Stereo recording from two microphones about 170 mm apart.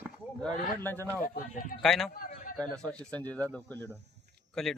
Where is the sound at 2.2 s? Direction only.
55° left (ahead or behind).